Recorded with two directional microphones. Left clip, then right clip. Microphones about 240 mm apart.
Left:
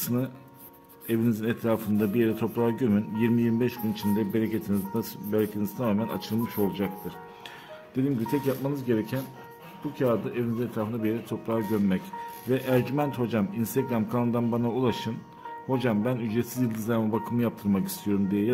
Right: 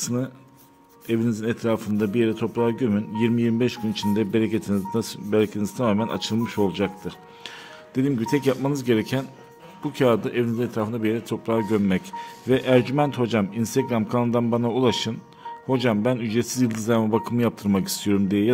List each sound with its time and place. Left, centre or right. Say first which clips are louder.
0.0 s speech: right 3 dB; centre